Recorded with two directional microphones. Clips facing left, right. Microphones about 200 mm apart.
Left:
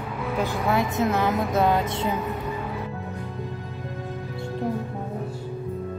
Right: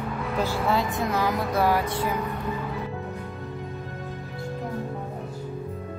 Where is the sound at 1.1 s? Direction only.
25° left (ahead or behind).